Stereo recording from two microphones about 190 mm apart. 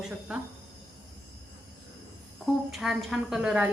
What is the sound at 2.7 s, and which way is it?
Speech, centre (ahead or behind).